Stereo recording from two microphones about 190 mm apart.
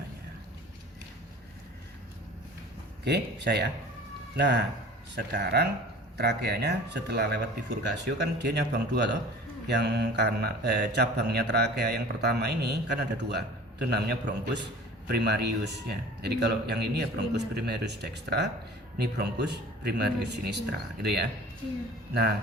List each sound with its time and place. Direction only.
3.0 s mantra: 60° right (ahead or behind)